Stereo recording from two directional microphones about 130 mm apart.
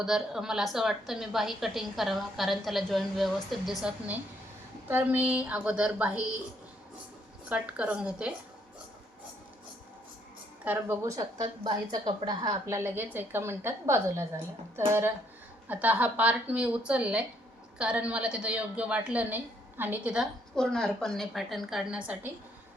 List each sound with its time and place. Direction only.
0.0 s a woman's voice: 5° right (ahead or behind)
7.5 s a woman's voice: 10° right (ahead or behind)
10.6 s a woman's voice: 15° right (ahead or behind)
11.0 s a woman's voice: 30° right (ahead or behind); by 20.2 s 10° right (ahead or behind)
20.6 s a woman's voice: 5° left (ahead or behind)